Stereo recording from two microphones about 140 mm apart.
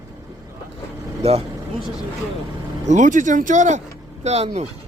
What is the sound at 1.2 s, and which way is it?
Speech, 45° right (ahead or behind).